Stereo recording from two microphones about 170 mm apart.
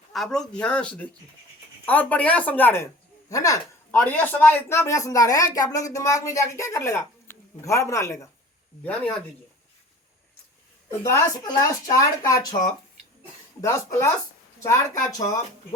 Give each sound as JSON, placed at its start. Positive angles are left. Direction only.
{"t": 0.1, "sound": "speech", "side_deg": 0}
{"t": 11.0, "sound": "speech", "side_deg": 15}